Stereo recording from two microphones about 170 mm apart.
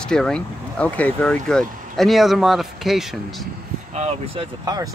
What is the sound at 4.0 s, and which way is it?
Speech, 40° right (ahead or behind).